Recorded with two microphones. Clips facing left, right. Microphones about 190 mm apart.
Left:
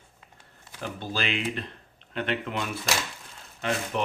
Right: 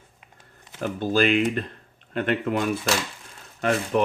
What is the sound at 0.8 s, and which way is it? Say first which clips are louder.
Speech: right 10 dB; 45° right (ahead or behind).